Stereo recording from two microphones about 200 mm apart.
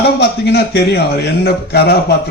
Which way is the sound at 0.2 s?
55° left (ahead or behind).